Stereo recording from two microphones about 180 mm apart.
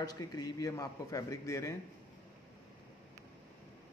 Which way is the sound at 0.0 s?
20° left (ahead or behind).